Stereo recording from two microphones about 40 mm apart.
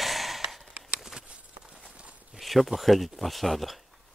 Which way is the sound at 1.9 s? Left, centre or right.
Right.